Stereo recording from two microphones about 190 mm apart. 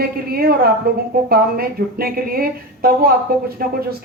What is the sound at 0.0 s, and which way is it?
Speech, 55° right (ahead or behind).